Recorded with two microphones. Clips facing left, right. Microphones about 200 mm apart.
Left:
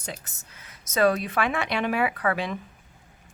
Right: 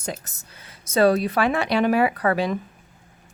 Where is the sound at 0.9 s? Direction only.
30° right (ahead or behind).